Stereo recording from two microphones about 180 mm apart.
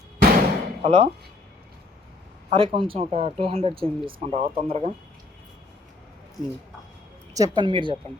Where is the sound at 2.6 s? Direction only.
30° right (ahead or behind).